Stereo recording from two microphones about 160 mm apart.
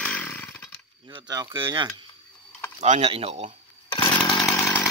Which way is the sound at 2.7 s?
40° right (ahead or behind).